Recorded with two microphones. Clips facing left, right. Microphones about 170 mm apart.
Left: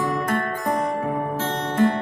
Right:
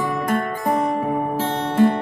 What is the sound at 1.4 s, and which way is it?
Music, 15° right (ahead or behind).